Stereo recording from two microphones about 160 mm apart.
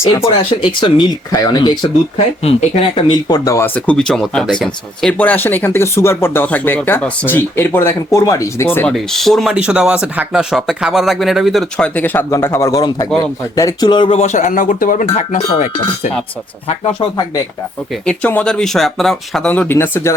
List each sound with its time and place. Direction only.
0.6 s speech: 30° left (ahead or behind)
2.1 s speech: 40° left (ahead or behind); by 3.7 s 20° left (ahead or behind)
3.8 s speech: 5° left (ahead or behind)
8.9 s speech: centre (ahead or behind); by 14.2 s 30° left (ahead or behind)
14.2 s speech: 50° left (ahead or behind); by 17.4 s 25° left (ahead or behind)
18.0 s speech: 10° left (ahead or behind)